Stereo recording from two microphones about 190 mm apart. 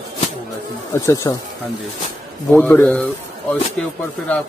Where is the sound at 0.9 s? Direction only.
20° left (ahead or behind).